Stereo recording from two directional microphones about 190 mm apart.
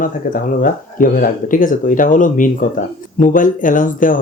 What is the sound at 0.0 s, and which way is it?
Speech, 45° left (ahead or behind).